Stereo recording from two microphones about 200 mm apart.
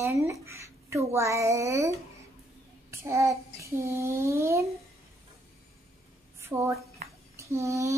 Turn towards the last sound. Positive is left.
turn(degrees=-15)  # may be behind; listen again after turning